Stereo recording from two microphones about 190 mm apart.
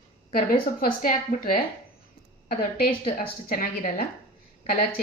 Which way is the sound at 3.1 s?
50° left (ahead or behind).